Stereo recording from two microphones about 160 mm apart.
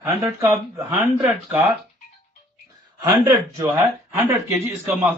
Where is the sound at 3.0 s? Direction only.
25° right (ahead or behind).